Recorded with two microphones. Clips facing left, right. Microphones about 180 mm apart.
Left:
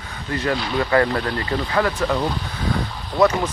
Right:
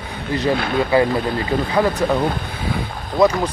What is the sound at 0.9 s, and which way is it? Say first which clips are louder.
Speech: right 2 dB; 10° right (ahead or behind).